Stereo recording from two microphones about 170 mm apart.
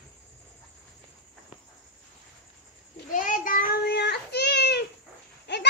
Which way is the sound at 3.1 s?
50° left (ahead or behind).